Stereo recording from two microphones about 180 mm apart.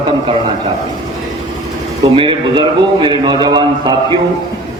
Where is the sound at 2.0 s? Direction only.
25° right (ahead or behind).